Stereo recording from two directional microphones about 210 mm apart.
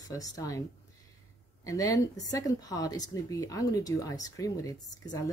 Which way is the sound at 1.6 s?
15° left (ahead or behind).